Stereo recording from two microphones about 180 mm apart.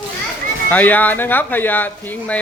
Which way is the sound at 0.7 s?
10° left (ahead or behind).